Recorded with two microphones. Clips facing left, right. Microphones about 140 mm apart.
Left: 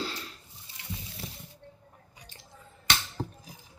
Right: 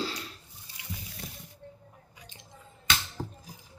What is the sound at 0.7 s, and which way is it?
Water, 25° left (ahead or behind).